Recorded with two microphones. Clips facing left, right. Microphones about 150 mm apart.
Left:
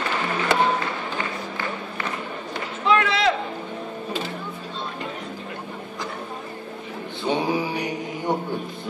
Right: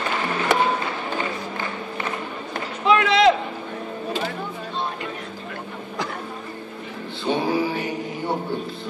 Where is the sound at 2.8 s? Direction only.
15° right (ahead or behind).